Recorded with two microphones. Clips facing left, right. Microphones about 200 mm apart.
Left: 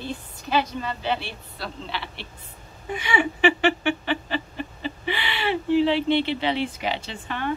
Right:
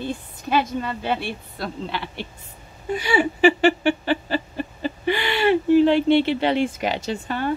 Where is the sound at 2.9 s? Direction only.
35° right (ahead or behind).